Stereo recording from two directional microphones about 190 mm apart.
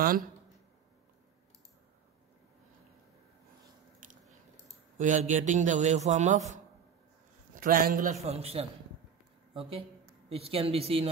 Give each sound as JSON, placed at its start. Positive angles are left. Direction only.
{"t": 4.0, "sound": "biting", "side_deg": -45}
{"t": 4.9, "sound": "a man's voice", "side_deg": -40}
{"t": 7.6, "sound": "a man's voice", "side_deg": -50}
{"t": 8.2, "sound": "a man's voice", "side_deg": -35}